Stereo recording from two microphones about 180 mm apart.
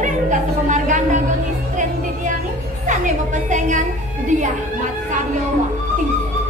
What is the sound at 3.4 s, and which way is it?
Speech, 45° right (ahead or behind).